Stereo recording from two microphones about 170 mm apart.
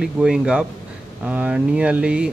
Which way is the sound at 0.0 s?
5° right (ahead or behind).